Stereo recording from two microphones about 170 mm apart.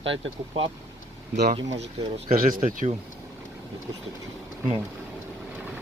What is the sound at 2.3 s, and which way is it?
Speech, 55° right (ahead or behind).